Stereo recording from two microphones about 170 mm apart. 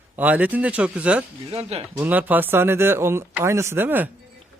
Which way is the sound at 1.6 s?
35° right (ahead or behind).